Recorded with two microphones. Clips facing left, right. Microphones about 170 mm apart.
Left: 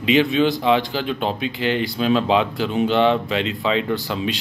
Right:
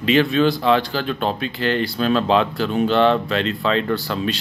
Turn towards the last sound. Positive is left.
turn(degrees=15)  # may be behind; listen again after turning